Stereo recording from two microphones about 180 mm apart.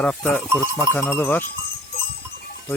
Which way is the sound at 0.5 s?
15° right (ahead or behind).